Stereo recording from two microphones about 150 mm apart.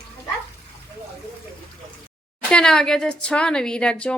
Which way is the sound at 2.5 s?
5° left (ahead or behind).